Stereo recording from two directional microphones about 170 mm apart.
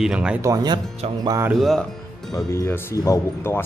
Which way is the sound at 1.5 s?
Centre (ahead or behind).